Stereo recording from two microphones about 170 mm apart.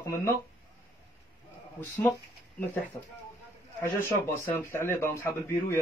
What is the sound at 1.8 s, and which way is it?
Speech, 10° left (ahead or behind).